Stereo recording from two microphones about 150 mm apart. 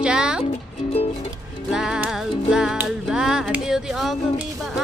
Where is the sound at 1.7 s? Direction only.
5° right (ahead or behind).